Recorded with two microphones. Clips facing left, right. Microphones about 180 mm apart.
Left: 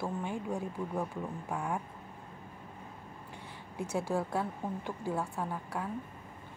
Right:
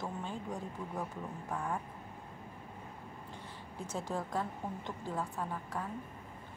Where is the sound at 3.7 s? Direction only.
10° left (ahead or behind).